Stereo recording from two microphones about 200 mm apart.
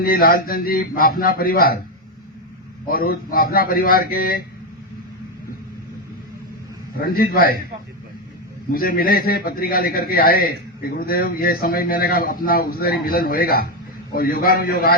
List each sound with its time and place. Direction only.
0.0 s a man's voice: 45° left (ahead or behind)
2.9 s a man's voice: 45° left (ahead or behind)
7.0 s a man's voice: 50° left (ahead or behind)
8.7 s a man's voice: 50° left (ahead or behind)